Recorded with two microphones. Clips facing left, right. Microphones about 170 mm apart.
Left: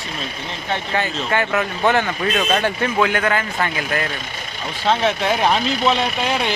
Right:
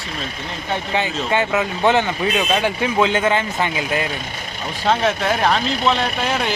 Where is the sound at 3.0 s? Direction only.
20° right (ahead or behind).